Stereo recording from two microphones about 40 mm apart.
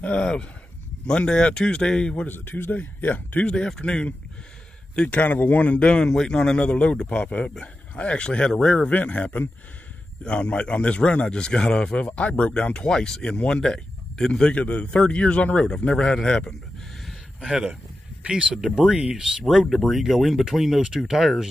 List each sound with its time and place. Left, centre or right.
0.2 s a man's voice: left
2.2 s a man's voice: left
2.7 s speech: left
3.4 s a man's voice: centre
5.2 s speech: left
5.7 s a man's voice: left
5.9 s a man's voice: centre
8.9 s a man's voice: left; by 13.3 s centre
13.3 s a man's voice: left
13.6 s a man's voice: centre
14.5 s a man's voice: left
17.4 s speech: centre